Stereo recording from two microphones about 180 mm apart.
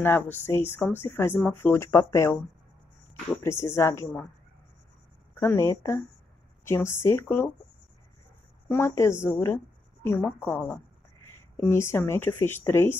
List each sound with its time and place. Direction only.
0.0 s speech: 10° left (ahead or behind)
3.4 s speech: 15° left (ahead or behind)
5.3 s speech: 15° left (ahead or behind)
8.6 s speech: 15° left (ahead or behind)